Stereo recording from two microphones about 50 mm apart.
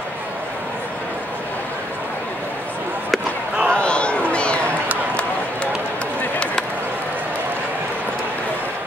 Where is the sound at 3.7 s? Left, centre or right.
Left.